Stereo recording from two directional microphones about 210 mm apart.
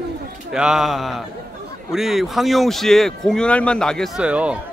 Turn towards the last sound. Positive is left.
turn(degrees=-5)  # may be behind; listen again after turning